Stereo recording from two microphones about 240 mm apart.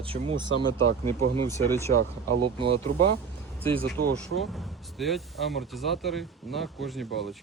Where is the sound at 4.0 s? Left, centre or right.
Right.